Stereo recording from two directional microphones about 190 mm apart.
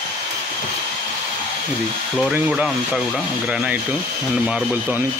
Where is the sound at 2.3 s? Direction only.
5° right (ahead or behind).